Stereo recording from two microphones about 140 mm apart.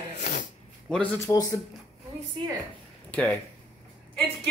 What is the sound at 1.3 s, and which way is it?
Speech, 25° left (ahead or behind).